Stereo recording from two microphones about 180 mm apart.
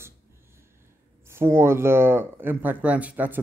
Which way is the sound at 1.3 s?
15° right (ahead or behind).